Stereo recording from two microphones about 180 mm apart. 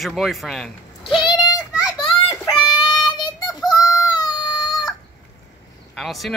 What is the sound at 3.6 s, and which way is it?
Fowl, 20° left (ahead or behind).